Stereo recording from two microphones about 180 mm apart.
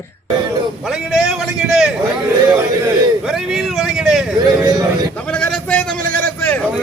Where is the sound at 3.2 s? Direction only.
Centre (ahead or behind).